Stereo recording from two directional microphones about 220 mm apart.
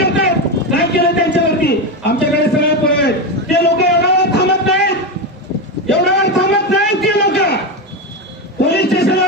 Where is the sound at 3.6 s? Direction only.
50° left (ahead or behind).